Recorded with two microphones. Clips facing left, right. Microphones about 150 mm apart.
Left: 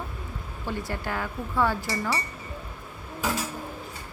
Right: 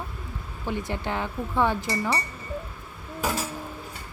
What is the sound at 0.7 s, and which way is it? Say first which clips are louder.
Speech: right 2 dB; 20° right (ahead or behind).